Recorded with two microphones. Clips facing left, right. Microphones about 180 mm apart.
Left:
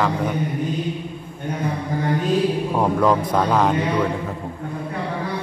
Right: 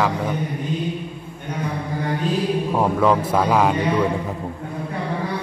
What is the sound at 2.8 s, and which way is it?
Speech, centre (ahead or behind).